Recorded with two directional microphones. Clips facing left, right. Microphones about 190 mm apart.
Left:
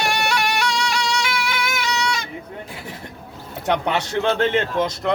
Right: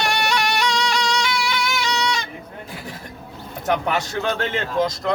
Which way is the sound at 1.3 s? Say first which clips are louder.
Right 1 dB; 5° left (ahead or behind).